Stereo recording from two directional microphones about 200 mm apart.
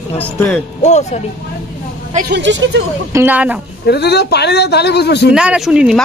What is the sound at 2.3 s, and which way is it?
Speech, 65° right (ahead or behind).